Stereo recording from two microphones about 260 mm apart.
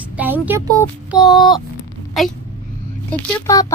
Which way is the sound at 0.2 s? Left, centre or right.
Centre.